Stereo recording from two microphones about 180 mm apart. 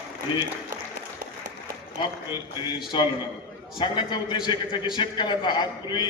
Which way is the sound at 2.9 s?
25° left (ahead or behind).